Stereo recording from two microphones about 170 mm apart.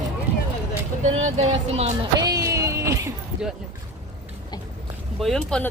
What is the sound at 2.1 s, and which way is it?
Music, 20° right (ahead or behind).